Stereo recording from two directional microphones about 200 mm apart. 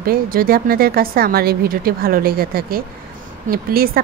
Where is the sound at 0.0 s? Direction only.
45° right (ahead or behind).